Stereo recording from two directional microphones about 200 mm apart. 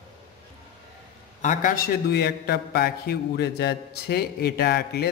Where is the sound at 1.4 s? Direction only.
45° left (ahead or behind).